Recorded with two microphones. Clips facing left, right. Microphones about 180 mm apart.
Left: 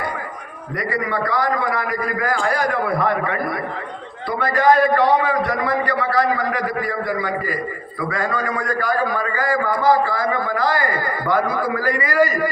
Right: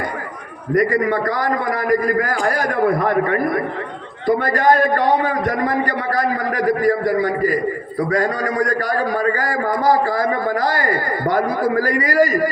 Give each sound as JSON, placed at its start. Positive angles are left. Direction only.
{"t": 0.7, "sound": "a man's voice", "side_deg": -45}